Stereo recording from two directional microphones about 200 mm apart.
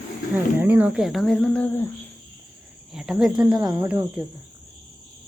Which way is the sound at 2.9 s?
5° right (ahead or behind).